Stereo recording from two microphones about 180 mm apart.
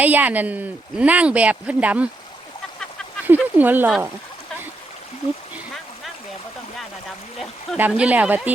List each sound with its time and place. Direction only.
0.0 s speech: 10° right (ahead or behind)
3.2 s speech: 10° right (ahead or behind)
7.8 s speech: 10° right (ahead or behind)